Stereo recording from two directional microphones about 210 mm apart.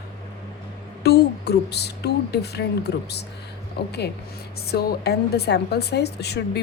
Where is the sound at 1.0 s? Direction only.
50° left (ahead or behind).